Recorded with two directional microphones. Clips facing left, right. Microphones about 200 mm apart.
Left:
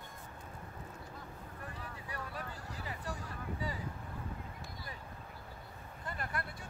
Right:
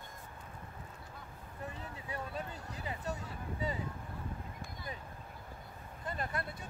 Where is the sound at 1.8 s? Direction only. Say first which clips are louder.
Right 1 dB; 25° right (ahead or behind).